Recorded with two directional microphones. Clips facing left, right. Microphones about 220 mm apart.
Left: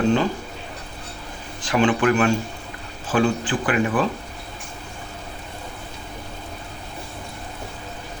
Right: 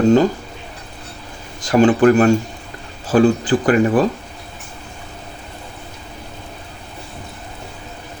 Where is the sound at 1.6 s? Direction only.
40° right (ahead or behind).